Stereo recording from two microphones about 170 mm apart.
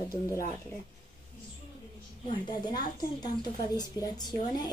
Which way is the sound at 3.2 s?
25° left (ahead or behind).